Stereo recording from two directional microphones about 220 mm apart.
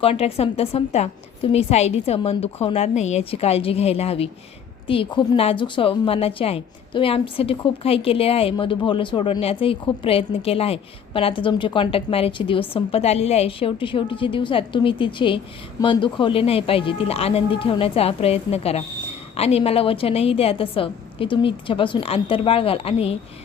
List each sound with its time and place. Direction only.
0.0 s a woman's voice: 25° left (ahead or behind)